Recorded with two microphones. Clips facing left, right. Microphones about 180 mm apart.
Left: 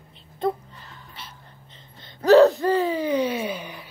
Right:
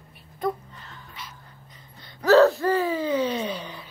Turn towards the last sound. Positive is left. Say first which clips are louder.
# left 1 dB
turn(degrees=10)  # may be behind; listen again after turning